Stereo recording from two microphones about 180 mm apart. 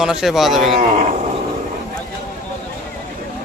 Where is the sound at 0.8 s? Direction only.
40° right (ahead or behind).